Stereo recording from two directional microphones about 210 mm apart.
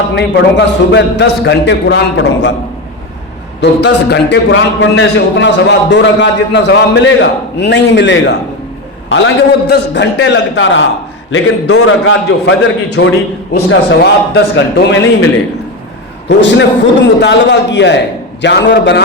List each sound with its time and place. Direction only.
0.1 s a man's voice: 55° left (ahead or behind)
3.6 s a man's voice: 55° left (ahead or behind)
16.4 s a man's voice: 60° left (ahead or behind)